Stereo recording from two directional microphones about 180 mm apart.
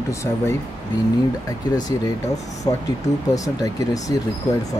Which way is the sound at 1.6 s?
20° left (ahead or behind).